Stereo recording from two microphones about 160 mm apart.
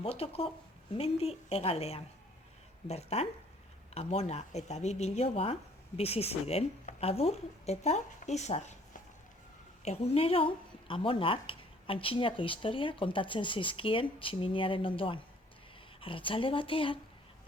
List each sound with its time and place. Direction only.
0.0 s speech: 40° left (ahead or behind)